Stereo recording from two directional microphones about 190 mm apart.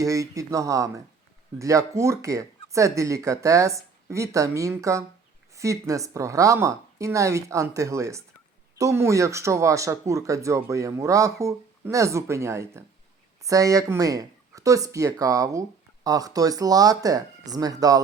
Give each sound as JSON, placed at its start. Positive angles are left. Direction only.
{"t": 0.0, "sound": "speech", "side_deg": -15}